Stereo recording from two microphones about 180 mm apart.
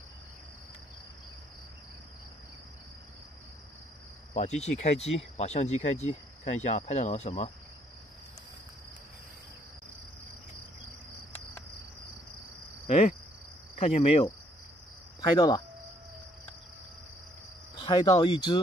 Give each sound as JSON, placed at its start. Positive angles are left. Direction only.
{"t": 4.3, "sound": "speech", "side_deg": 40}
{"t": 12.8, "sound": "cricket", "side_deg": 35}
{"t": 15.1, "sound": "cricket", "side_deg": 20}
{"t": 17.7, "sound": "speech", "side_deg": 25}